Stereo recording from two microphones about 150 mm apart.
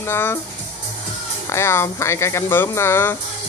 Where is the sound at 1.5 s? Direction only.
15° left (ahead or behind).